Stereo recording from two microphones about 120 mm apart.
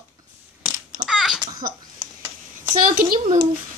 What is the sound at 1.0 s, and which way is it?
Babbling, centre (ahead or behind).